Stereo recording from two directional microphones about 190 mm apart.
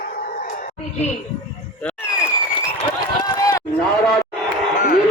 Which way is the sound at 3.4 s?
15° left (ahead or behind).